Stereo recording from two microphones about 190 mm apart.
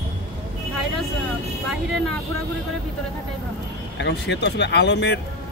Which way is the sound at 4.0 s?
65° left (ahead or behind).